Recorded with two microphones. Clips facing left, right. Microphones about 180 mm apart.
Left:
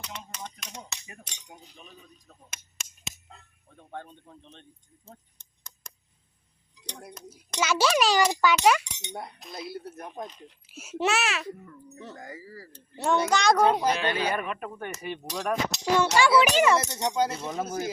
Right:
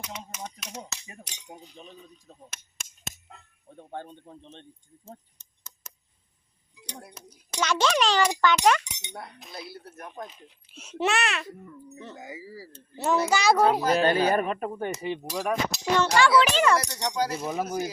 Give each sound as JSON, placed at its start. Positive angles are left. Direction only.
{"t": 1.5, "sound": "speech", "side_deg": -30}
{"t": 2.7, "sound": "a sound", "side_deg": 0}
{"t": 3.7, "sound": "speech", "side_deg": -30}
{"t": 5.8, "sound": "a sound", "side_deg": -5}
{"t": 7.1, "sound": "a child's voice", "side_deg": -5}
{"t": 7.6, "sound": "a child's voice", "side_deg": 5}
{"t": 9.6, "sound": "speech", "side_deg": 20}
{"t": 10.7, "sound": "a child's voice", "side_deg": 5}
{"t": 13.9, "sound": "speech", "side_deg": -40}
{"t": 14.9, "sound": "speech", "side_deg": -15}
{"t": 16.0, "sound": "a child's voice", "side_deg": 10}
{"t": 16.7, "sound": "speech", "side_deg": 25}
{"t": 17.4, "sound": "speech", "side_deg": -10}